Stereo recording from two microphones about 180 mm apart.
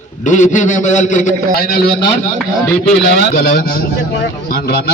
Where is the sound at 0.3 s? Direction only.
45° left (ahead or behind).